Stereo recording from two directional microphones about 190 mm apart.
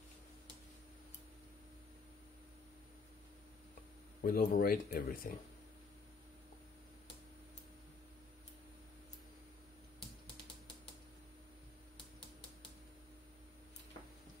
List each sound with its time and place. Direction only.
4.2 s speech: 50° left (ahead or behind)